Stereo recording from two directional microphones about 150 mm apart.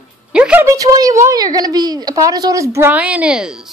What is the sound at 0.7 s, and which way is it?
A woman's voice, 25° right (ahead or behind).